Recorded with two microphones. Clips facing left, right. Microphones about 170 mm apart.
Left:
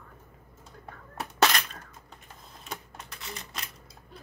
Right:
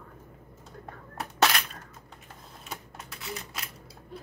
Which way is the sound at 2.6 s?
5° right (ahead or behind).